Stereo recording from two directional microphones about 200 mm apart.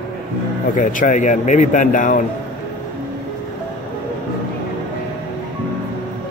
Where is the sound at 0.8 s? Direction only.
40° left (ahead or behind).